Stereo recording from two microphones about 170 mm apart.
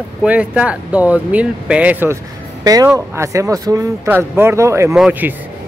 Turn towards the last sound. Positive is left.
turn(degrees=-10)  # may be behind; listen again after turning